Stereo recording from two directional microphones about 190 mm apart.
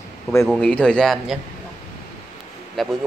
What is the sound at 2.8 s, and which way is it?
Speech, centre (ahead or behind).